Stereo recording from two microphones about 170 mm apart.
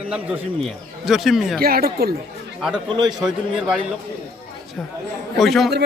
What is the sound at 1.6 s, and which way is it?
Speech, 60° right (ahead or behind).